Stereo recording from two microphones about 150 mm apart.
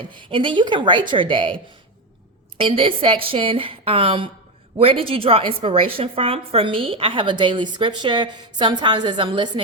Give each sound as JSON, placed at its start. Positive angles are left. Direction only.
{"t": 0.1, "sound": "a woman's voice", "side_deg": -35}
{"t": 2.6, "sound": "a woman's voice", "side_deg": -35}